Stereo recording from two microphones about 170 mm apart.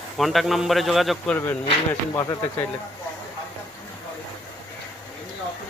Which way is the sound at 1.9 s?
20° left (ahead or behind).